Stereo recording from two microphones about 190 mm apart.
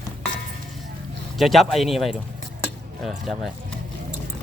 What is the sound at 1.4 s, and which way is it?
Speech, centre (ahead or behind).